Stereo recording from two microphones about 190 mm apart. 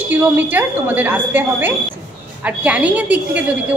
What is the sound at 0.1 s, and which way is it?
A woman's voice, 10° right (ahead or behind).